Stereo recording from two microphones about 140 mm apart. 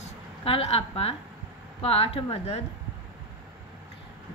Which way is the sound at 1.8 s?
40° left (ahead or behind).